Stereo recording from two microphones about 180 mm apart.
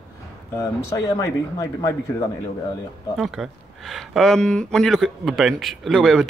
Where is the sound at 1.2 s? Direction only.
20° left (ahead or behind).